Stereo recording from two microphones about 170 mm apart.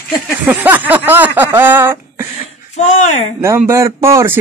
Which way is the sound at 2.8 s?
40° left (ahead or behind).